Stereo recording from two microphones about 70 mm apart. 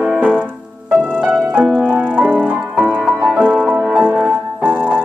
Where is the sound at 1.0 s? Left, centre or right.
Right.